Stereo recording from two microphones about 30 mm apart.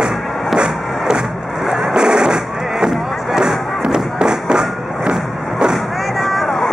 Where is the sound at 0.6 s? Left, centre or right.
Right.